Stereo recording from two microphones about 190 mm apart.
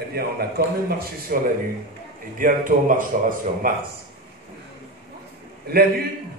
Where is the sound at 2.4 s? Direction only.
45° right (ahead or behind).